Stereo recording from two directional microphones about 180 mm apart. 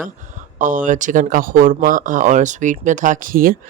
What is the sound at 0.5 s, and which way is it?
Speech, 45° right (ahead or behind).